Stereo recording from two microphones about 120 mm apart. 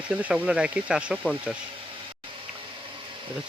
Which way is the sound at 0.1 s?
10° right (ahead or behind).